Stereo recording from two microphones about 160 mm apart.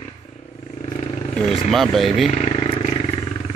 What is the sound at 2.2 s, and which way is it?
Wild animals, 40° left (ahead or behind).